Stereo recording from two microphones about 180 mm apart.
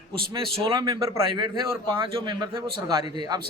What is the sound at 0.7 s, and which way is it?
A man's voice, 20° right (ahead or behind).